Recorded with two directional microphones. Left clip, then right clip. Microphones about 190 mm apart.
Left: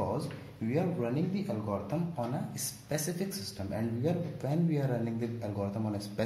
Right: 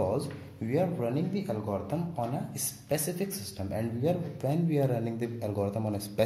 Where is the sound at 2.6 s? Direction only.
25° right (ahead or behind).